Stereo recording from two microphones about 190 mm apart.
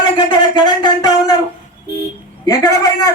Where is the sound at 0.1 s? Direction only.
20° left (ahead or behind).